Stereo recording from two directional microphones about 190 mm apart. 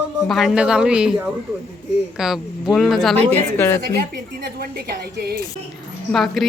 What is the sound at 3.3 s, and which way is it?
Speech, 15° left (ahead or behind).